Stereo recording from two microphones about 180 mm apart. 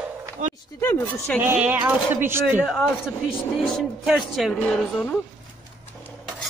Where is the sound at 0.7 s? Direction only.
10° left (ahead or behind).